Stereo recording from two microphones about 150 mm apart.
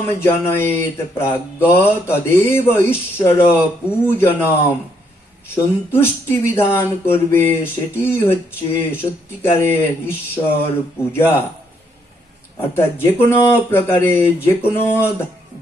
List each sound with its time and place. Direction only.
0.2 s speech: 15° left (ahead or behind)
5.9 s speech: 15° left (ahead or behind)
12.5 s speech: 15° left (ahead or behind)